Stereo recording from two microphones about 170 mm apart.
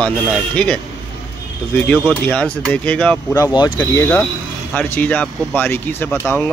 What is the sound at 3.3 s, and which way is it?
Speech, 20° left (ahead or behind).